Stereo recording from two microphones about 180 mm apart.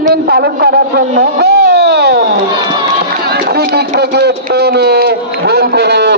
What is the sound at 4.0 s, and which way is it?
A man's voice, 65° right (ahead or behind).